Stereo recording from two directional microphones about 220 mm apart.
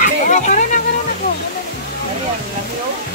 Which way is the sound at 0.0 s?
35° left (ahead or behind).